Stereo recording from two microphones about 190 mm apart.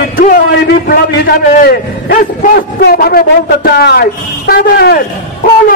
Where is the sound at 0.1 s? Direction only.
45° left (ahead or behind).